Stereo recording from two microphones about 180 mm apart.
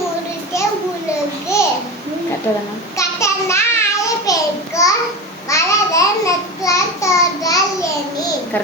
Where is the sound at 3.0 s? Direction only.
15° left (ahead or behind).